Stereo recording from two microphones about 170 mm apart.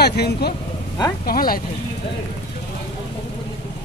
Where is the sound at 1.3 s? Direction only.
60° left (ahead or behind).